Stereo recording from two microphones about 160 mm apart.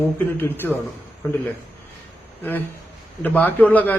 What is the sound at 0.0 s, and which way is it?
Speech, 15° left (ahead or behind).